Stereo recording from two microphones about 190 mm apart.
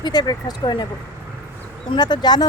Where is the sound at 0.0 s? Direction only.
20° left (ahead or behind).